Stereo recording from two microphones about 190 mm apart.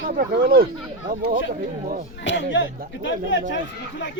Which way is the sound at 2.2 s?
70° left (ahead or behind).